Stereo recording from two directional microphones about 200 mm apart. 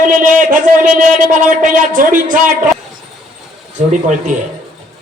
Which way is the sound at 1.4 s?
40° right (ahead or behind).